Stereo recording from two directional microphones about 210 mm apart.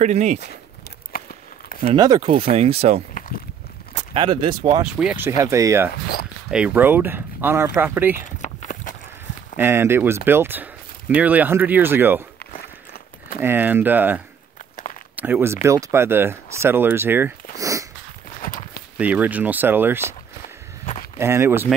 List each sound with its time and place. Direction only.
0.0 s speech: 35° right (ahead or behind)
2.0 s speech: 20° right (ahead or behind)
3.2 s a sound: 40° left (ahead or behind)
4.1 s speech: 25° right (ahead or behind)
4.9 s speech: 5° right (ahead or behind)
8.2 s a sound: 35° left (ahead or behind)
9.6 s speech: 10° right (ahead or behind)
12.5 s walk: 45° left (ahead or behind)
13.4 s speech: 10° right (ahead or behind)
17.6 s a sound: 15° right (ahead or behind)
18.4 s walk: 40° left (ahead or behind)
18.9 s speech: 5° right (ahead or behind)
20.8 s a sound: 35° left (ahead or behind)
21.2 s speech: 10° right (ahead or behind)